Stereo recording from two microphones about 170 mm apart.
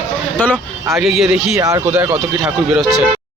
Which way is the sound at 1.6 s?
20° right (ahead or behind).